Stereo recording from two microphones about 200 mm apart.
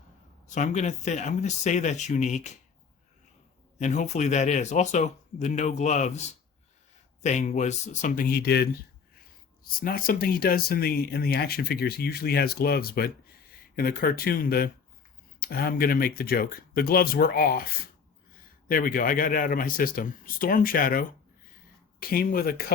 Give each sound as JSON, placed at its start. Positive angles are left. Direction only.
{"t": 0.4, "sound": "a man's voice", "side_deg": 35}
{"t": 3.8, "sound": "a man's voice", "side_deg": 35}
{"t": 18.7, "sound": "speech", "side_deg": 45}